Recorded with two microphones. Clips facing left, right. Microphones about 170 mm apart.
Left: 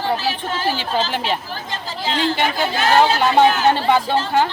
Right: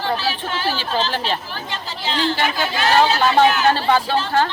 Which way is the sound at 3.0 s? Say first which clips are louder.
Left 1 dB; 15° left (ahead or behind).